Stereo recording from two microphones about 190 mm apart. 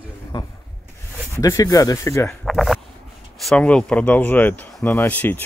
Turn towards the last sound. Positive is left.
turn(degrees=10)  # may be behind; listen again after turning